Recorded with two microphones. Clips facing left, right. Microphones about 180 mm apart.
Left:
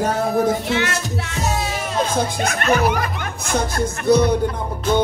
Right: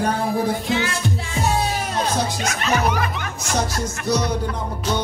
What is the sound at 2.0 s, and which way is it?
Speech, 55° left (ahead or behind).